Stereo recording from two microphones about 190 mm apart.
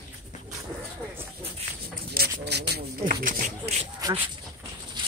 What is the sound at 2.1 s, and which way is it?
Speech, 55° right (ahead or behind).